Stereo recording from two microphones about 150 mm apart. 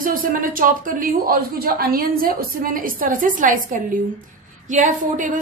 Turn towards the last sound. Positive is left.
turn(degrees=-60)  # may be behind; listen again after turning